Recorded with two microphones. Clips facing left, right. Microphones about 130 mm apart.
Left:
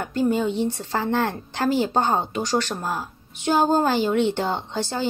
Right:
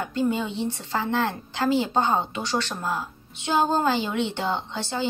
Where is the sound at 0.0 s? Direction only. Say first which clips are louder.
Left 3 dB; 45° left (ahead or behind).